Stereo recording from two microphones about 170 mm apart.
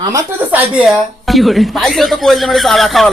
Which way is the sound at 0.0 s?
20° right (ahead or behind).